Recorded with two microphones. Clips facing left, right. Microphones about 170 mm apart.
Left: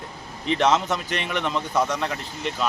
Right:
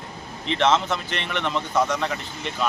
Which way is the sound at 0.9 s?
5° left (ahead or behind).